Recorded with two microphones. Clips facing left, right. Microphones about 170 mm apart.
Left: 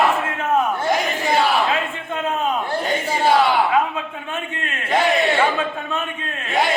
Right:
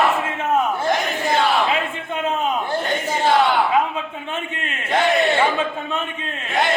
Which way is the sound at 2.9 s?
10° left (ahead or behind).